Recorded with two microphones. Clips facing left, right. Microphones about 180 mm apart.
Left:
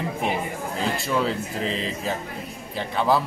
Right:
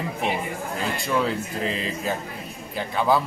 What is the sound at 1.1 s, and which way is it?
Speech, centre (ahead or behind).